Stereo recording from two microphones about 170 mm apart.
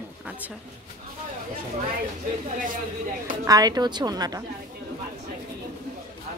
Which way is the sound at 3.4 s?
20° right (ahead or behind).